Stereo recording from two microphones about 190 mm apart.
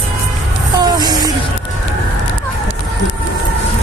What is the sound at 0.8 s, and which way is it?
Music, 20° right (ahead or behind).